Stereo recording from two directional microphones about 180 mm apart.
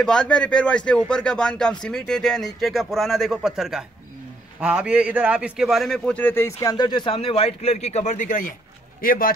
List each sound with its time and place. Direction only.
0.0 s a man's voice: 5° left (ahead or behind); by 9.3 s 55° left (ahead or behind)